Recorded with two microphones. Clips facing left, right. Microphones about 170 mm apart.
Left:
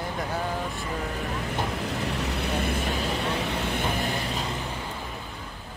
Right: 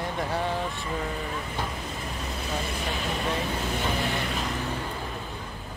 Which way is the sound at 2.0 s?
75° left (ahead or behind).